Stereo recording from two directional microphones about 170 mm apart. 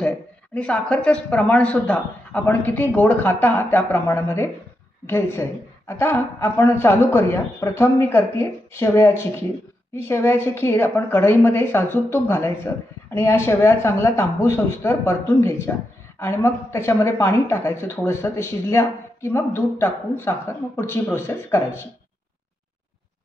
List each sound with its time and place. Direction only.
0.6 s a woman's voice: 5° left (ahead or behind)